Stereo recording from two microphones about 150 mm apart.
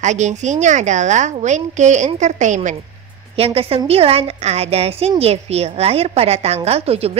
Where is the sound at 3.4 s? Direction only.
40° right (ahead or behind).